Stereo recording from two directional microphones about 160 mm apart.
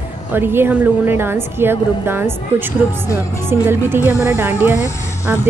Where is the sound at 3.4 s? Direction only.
15° right (ahead or behind).